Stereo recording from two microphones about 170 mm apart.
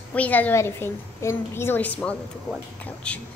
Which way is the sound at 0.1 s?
10° left (ahead or behind).